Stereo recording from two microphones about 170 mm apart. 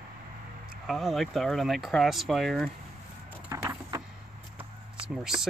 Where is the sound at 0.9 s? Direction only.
Centre (ahead or behind).